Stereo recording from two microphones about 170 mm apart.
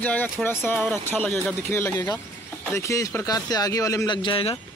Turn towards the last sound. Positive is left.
turn(degrees=30)  # may be behind; listen again after turning